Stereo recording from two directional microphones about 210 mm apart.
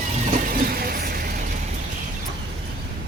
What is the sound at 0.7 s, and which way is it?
Vehicle, 45° right (ahead or behind).